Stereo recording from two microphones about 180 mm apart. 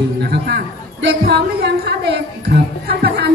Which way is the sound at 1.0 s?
65° right (ahead or behind).